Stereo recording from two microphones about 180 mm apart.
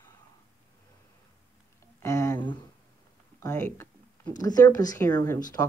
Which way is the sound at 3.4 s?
15° left (ahead or behind).